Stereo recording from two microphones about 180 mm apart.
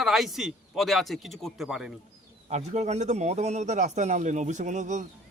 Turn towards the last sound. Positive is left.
turn(degrees=-40)  # may be behind; listen again after turning